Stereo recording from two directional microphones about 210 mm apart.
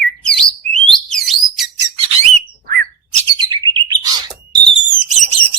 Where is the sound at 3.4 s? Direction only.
20° right (ahead or behind).